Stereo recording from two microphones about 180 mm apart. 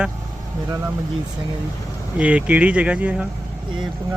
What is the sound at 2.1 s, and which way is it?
Speech, 5° right (ahead or behind).